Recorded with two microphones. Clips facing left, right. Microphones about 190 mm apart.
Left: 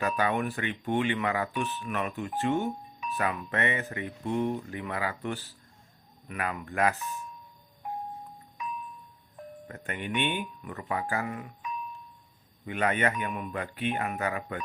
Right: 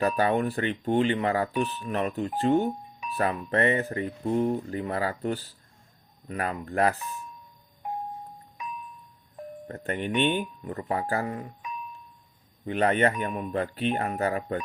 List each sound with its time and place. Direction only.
0.0 s speech: 35° right (ahead or behind)
9.6 s speech: 35° right (ahead or behind)